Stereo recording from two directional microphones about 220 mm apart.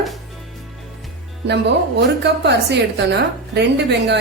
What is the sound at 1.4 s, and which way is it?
A woman's voice, 50° right (ahead or behind).